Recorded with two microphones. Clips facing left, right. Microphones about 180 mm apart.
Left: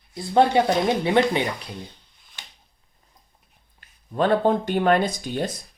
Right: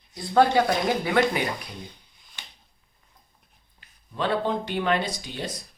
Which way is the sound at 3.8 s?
50° left (ahead or behind).